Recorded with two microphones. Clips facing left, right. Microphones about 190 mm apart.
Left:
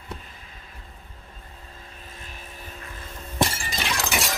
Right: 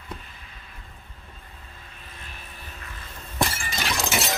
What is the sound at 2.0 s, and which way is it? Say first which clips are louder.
Vehicle: left 1 dB; 45° left (ahead or behind).